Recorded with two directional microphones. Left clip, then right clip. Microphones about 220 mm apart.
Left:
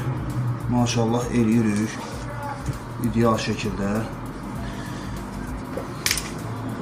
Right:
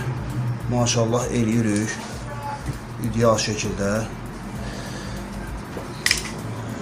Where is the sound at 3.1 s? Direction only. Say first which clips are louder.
Right 3 dB; 50° right (ahead or behind).